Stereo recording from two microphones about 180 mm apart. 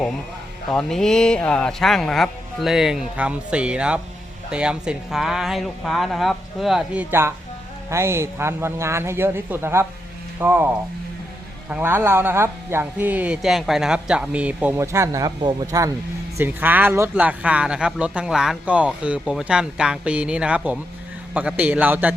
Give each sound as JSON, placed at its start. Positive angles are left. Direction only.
{"t": 0.7, "sound": "speech", "side_deg": 5}
{"t": 11.7, "sound": "speech", "side_deg": -10}